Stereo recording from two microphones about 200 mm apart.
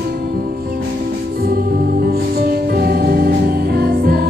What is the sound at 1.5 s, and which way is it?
Music, 50° right (ahead or behind).